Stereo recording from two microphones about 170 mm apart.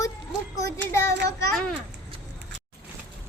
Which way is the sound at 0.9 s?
15° left (ahead or behind).